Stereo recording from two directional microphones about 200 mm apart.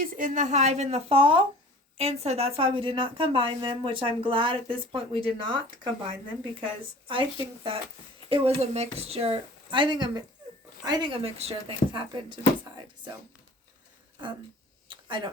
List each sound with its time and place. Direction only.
0.0 s a woman's voice: 40° right (ahead or behind); by 5.9 s 25° right (ahead or behind)
7.1 s a woman's voice: 25° right (ahead or behind)
14.8 s a sound: 25° right (ahead or behind)